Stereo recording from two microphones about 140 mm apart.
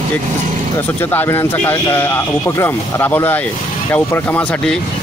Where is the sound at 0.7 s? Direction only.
15° left (ahead or behind).